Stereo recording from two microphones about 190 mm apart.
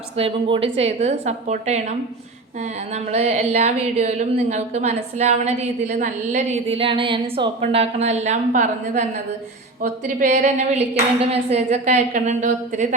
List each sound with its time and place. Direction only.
0.2 s a woman's voice: 25° right (ahead or behind)